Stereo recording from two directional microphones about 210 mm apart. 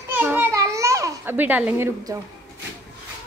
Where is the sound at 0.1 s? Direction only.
10° right (ahead or behind).